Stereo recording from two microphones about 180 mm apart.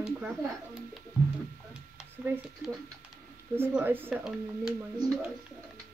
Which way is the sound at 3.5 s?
10° right (ahead or behind).